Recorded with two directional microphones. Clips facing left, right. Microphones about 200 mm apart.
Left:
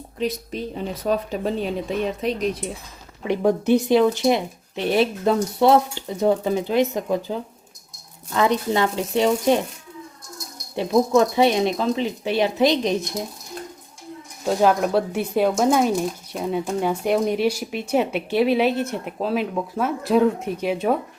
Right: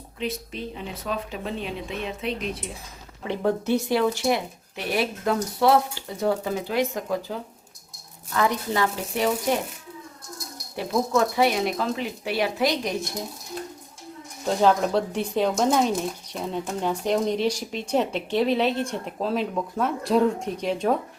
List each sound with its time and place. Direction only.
0.2 s speech: 40° left (ahead or behind)
3.2 s speech: 15° left (ahead or behind)
10.8 s speech: 20° left (ahead or behind)
14.4 s speech: 10° left (ahead or behind)